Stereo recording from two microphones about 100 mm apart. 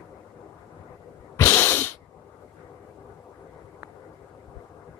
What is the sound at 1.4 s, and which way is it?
Sneeze, 20° left (ahead or behind).